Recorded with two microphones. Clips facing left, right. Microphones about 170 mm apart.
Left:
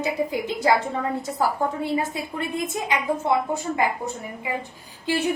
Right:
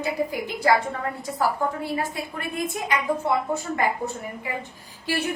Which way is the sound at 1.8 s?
20° left (ahead or behind).